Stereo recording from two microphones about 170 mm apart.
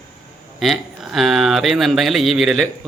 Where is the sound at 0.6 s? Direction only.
Centre (ahead or behind).